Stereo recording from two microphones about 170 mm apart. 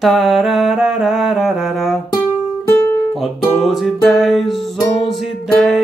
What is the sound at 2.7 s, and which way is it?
Guitar, 20° left (ahead or behind).